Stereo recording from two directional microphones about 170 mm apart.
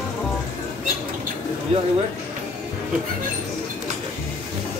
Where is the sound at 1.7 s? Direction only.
35° right (ahead or behind).